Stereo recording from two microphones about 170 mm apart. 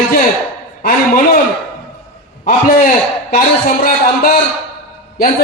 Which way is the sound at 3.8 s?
60° left (ahead or behind).